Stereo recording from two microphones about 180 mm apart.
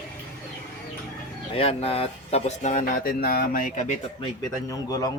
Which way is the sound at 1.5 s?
35° left (ahead or behind).